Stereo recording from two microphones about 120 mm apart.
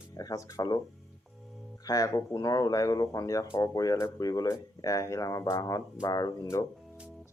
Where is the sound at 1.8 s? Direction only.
30° left (ahead or behind).